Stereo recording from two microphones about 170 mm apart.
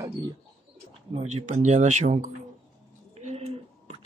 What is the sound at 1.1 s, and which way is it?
Speech, 40° right (ahead or behind).